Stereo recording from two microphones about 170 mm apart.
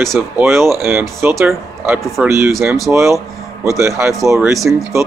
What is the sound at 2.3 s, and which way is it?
Speech, 15° right (ahead or behind).